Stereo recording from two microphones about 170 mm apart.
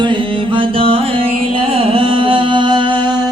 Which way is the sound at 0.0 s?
30° right (ahead or behind).